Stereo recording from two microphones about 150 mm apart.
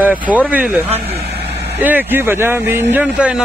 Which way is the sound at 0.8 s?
45° right (ahead or behind).